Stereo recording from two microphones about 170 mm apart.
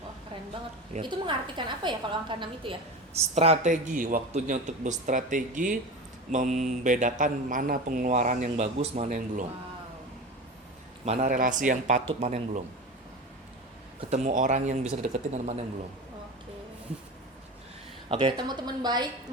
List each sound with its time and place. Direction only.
1.0 s a woman's voice: 30° right (ahead or behind); by 9.5 s 50° right (ahead or behind)
11.0 s a woman's voice: 40° right (ahead or behind)
14.1 s a woman's voice: 50° right (ahead or behind)
18.1 s a woman's voice: 30° right (ahead or behind)